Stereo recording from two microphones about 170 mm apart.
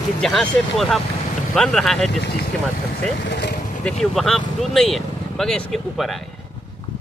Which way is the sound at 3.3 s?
80° left.